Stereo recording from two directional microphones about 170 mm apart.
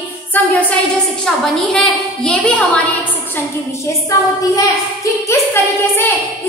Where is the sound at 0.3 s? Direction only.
10° left (ahead or behind).